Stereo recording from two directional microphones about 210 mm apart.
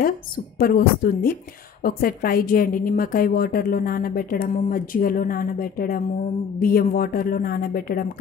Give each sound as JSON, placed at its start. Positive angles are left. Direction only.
{"t": 0.6, "sound": "a woman's voice", "side_deg": 45}